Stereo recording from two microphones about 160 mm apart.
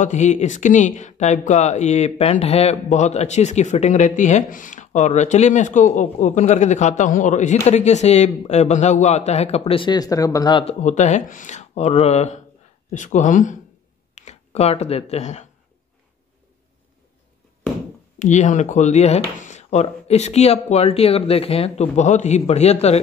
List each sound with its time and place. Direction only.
0.0 s speech: 50° left (ahead or behind); by 10.6 s 25° left (ahead or behind)
10.6 s speech: 45° left (ahead or behind)
18.2 s speech: 50° left (ahead or behind)